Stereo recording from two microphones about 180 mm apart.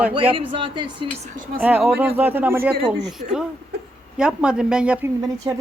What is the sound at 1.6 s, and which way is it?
Speech, 5° right (ahead or behind).